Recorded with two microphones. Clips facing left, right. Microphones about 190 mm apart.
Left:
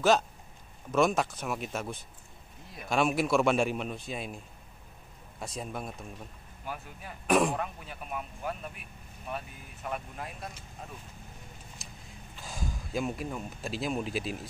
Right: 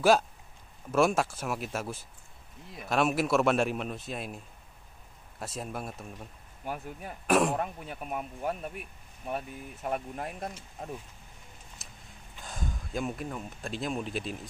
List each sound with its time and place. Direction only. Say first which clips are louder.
0.9 s speech: right 1 dB; 5° right (ahead or behind)
5.4 s speech: even; 5° right (ahead or behind)
6.6 s speech: right 4 dB; 45° right (ahead or behind)
7.2 s speech: even; 5° right (ahead or behind)
7.5 s speech: right 3 dB; 45° right (ahead or behind)
9.8 s speech: right 4 dB; 45° right (ahead or behind)
11.8 s vehicle: left 3 dB; centre (ahead or behind)
12.4 s speech: even; centre (ahead or behind)